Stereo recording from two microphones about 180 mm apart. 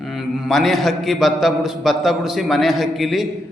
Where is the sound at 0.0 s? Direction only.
Centre (ahead or behind).